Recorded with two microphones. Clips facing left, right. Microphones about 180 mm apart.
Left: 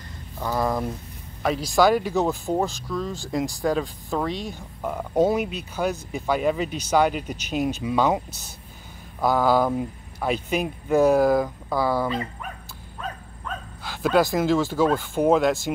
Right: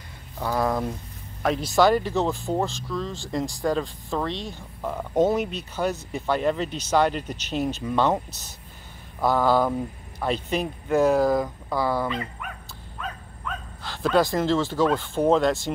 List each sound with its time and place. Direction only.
0.5 s speech: centre (ahead or behind)
9.2 s speech: 5° left (ahead or behind)
12.1 s speech: 35° left (ahead or behind)
13.8 s speech: 5° left (ahead or behind)